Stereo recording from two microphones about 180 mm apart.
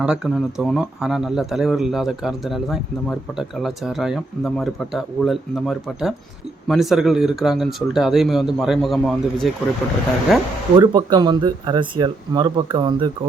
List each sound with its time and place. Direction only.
0.0 s speech: 5° right (ahead or behind)
10.8 s speech: 25° right (ahead or behind)